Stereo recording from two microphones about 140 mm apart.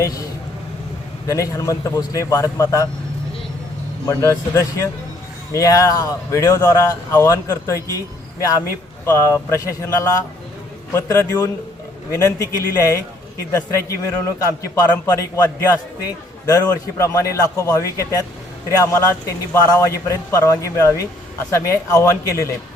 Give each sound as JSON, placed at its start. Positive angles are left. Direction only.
{"t": 1.3, "sound": "speech", "side_deg": 25}
{"t": 4.1, "sound": "speech", "side_deg": 20}